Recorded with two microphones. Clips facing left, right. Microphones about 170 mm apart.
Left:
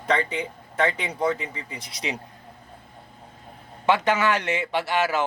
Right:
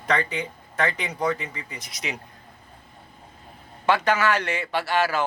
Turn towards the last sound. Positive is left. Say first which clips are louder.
# even
turn(degrees=20)  # may be behind; listen again after turning